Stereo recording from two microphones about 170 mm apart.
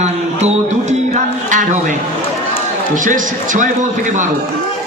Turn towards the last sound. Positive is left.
turn(degrees=-45)  # may be behind; listen again after turning